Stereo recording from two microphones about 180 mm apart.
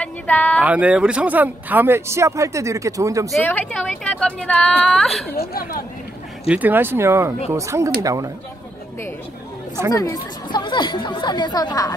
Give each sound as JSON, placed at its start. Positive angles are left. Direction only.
{"t": 0.0, "sound": "speech", "side_deg": 10}
{"t": 0.6, "sound": "speech", "side_deg": -5}
{"t": 3.3, "sound": "a woman's voice", "side_deg": 5}
{"t": 5.3, "sound": "speech", "side_deg": 55}
{"t": 6.5, "sound": "speech", "side_deg": -10}
{"t": 9.9, "sound": "speech", "side_deg": 20}